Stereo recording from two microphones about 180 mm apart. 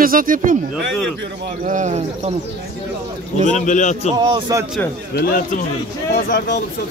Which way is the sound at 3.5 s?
45° left (ahead or behind).